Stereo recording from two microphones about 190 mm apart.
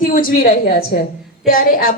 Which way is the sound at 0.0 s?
50° left (ahead or behind).